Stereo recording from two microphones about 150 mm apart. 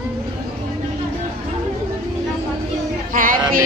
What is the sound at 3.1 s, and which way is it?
Music, 65° right (ahead or behind).